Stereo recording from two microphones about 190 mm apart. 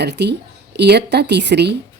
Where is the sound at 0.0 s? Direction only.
65° right (ahead or behind).